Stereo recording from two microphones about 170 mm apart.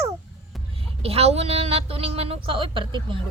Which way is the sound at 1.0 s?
35° right (ahead or behind).